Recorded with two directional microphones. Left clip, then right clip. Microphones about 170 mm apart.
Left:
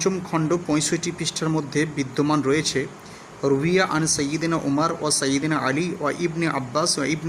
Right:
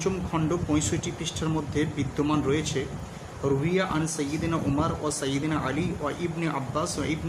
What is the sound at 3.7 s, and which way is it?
Speech, 35° left (ahead or behind).